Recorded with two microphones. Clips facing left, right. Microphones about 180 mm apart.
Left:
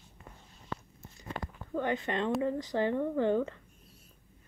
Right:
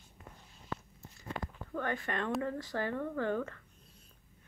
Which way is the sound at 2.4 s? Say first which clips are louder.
Left 6 dB; 15° left (ahead or behind).